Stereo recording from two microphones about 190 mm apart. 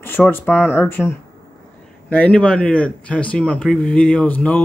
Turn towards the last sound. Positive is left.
turn(degrees=10)  # may be behind; listen again after turning